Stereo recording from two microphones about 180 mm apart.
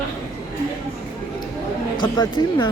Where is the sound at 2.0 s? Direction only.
25° left (ahead or behind).